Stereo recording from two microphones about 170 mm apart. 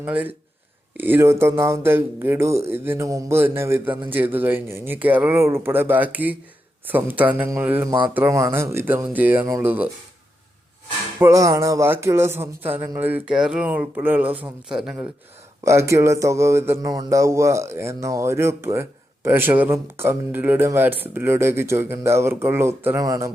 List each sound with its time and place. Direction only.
0.0 s speech: 10° right (ahead or behind)
11.2 s speech: 20° right (ahead or behind)
15.6 s speech: 15° right (ahead or behind)